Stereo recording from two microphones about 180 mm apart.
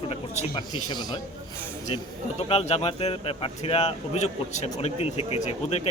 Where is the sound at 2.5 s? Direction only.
35° left (ahead or behind).